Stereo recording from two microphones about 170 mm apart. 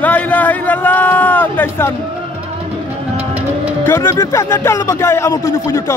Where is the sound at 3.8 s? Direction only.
15° left (ahead or behind).